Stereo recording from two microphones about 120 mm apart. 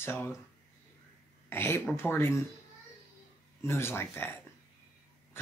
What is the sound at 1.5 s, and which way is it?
Speech, 20° left (ahead or behind).